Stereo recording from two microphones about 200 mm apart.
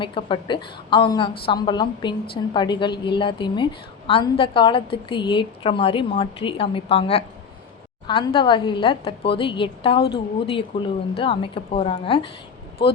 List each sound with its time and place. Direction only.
0.0 s a woman's voice: 25° left (ahead or behind)